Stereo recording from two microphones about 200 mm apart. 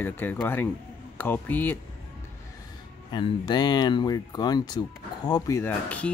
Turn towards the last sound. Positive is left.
turn(degrees=5)  # may be behind; listen again after turning